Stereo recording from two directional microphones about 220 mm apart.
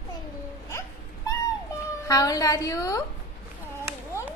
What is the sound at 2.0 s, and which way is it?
Speech, 15° left (ahead or behind).